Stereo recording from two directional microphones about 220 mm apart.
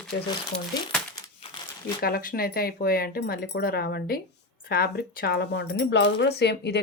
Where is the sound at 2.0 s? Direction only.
45° left (ahead or behind).